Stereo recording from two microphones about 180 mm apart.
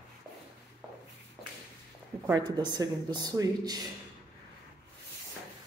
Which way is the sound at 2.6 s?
25° right (ahead or behind).